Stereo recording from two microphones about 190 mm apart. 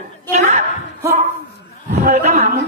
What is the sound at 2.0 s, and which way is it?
Speech, 40° right (ahead or behind).